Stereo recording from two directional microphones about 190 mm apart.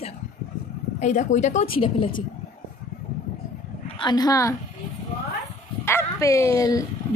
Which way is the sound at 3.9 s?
20° left (ahead or behind).